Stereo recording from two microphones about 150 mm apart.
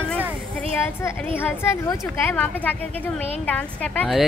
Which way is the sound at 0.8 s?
15° left (ahead or behind).